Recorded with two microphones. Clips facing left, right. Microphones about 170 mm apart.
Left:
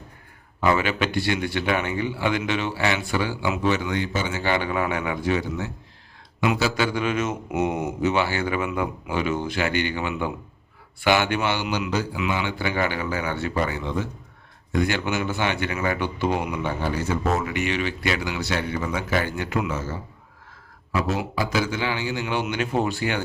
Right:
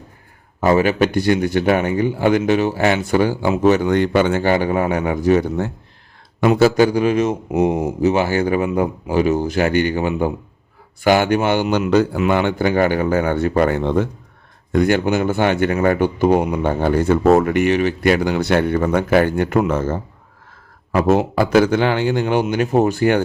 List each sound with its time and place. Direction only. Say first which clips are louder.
0.6 s speech: right 7 dB; 40° right (ahead or behind)
4.0 s a man's voice: right 10 dB; 60° right (ahead or behind)